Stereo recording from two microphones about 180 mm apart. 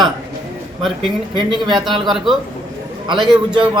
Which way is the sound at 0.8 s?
Centre (ahead or behind).